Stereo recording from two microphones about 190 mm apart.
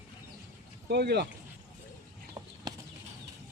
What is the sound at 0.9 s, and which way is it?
Speech, 60° right (ahead or behind).